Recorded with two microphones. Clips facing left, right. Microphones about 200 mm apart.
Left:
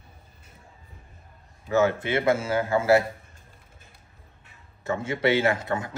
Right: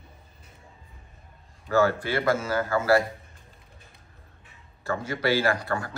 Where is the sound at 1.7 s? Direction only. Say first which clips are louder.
Left 1 dB; 20° left (ahead or behind).